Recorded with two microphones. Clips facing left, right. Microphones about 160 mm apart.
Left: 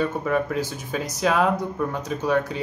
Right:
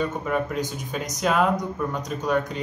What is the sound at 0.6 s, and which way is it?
Speech, 15° right (ahead or behind).